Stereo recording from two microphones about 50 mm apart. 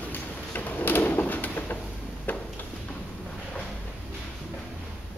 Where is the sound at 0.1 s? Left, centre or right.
Left.